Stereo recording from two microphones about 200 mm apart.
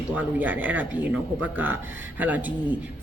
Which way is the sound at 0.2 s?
10° right (ahead or behind).